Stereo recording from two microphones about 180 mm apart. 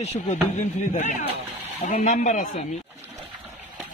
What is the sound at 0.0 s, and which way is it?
Speech, 35° left (ahead or behind).